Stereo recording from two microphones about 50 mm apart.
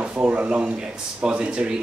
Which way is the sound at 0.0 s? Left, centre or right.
Right.